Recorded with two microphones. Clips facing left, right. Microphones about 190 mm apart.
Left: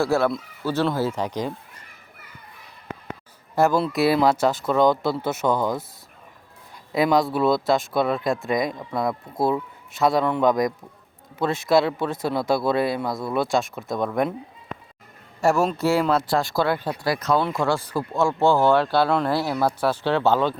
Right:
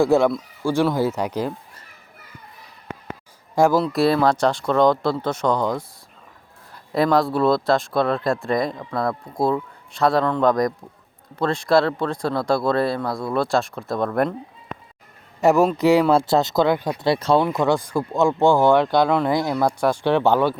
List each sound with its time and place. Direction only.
0.0 s speech: 15° right (ahead or behind)
3.5 s speech: 10° right (ahead or behind)
3.8 s speech: 5° left (ahead or behind)
6.9 s speech: centre (ahead or behind)
15.4 s a man's voice: 20° right (ahead or behind)
16.1 s speech: 25° right (ahead or behind)
17.1 s speech: 30° right (ahead or behind); by 19.4 s 10° right (ahead or behind)
19.4 s speech: 5° left (ahead or behind)
19.6 s speech: 15° right (ahead or behind)